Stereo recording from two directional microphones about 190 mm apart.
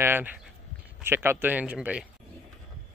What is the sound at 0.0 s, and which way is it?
Speech, 10° right (ahead or behind).